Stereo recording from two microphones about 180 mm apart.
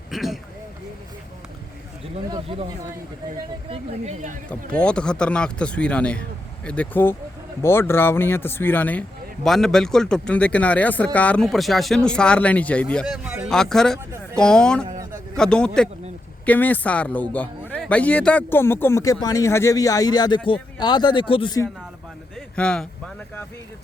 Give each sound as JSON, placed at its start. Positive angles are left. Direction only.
{"t": 0.1, "sound": "a sound", "side_deg": 0}
{"t": 2.3, "sound": "speech", "side_deg": -30}
{"t": 3.7, "sound": "speech", "side_deg": -40}
{"t": 4.4, "sound": "speech", "side_deg": 5}
{"t": 13.2, "sound": "a man's voice", "side_deg": -5}
{"t": 22.4, "sound": "speech", "side_deg": 5}